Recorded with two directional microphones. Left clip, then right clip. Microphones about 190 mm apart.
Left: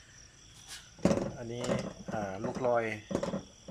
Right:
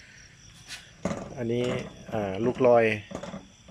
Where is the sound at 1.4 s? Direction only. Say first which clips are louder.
Right 6 dB; 5° right (ahead or behind).